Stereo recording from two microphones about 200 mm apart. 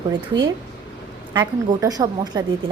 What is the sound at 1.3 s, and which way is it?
A woman's voice, 20° right (ahead or behind).